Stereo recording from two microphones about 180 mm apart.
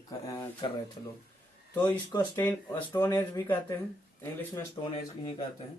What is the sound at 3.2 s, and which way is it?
Speech, 10° left (ahead or behind).